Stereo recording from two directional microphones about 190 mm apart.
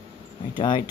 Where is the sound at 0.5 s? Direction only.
25° left (ahead or behind).